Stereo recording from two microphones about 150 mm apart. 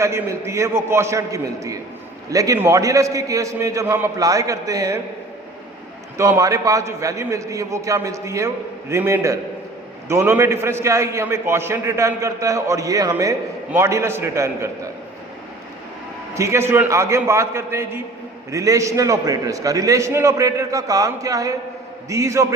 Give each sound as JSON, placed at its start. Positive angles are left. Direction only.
{"t": 0.0, "sound": "a man's voice", "side_deg": -20}
{"t": 6.1, "sound": "a man's voice", "side_deg": -20}
{"t": 16.3, "sound": "a man's voice", "side_deg": -20}